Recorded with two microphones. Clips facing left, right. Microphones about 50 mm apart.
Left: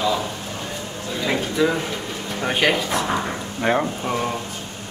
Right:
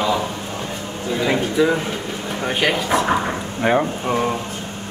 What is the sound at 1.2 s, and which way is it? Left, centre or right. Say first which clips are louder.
Speech: right 3 dB; centre.